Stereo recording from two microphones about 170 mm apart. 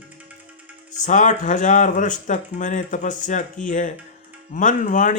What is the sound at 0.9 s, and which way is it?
Speech, 45° left (ahead or behind).